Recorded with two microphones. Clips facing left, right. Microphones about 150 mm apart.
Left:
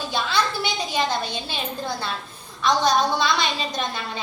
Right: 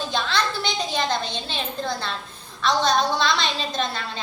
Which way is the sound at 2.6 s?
10° left (ahead or behind).